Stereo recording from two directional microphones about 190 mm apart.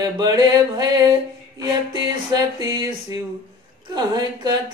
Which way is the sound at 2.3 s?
20° right (ahead or behind).